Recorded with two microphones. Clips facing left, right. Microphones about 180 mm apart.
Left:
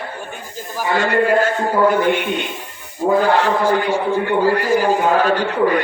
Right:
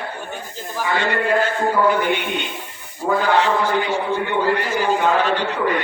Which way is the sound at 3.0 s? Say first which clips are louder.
Left 3 dB; 45° left (ahead or behind).